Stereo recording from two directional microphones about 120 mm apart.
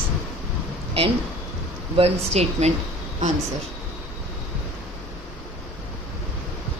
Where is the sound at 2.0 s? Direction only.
60° right (ahead or behind).